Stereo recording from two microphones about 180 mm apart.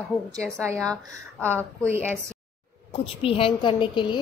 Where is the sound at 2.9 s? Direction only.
30° left (ahead or behind).